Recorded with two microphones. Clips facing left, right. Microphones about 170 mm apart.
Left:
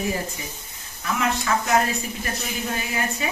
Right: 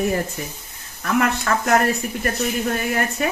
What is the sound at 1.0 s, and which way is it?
Speech, 55° right (ahead or behind).